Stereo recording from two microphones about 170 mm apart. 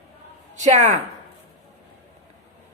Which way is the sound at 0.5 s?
45° right (ahead or behind).